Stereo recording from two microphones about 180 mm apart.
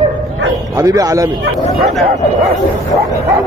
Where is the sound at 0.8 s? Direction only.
20° right (ahead or behind).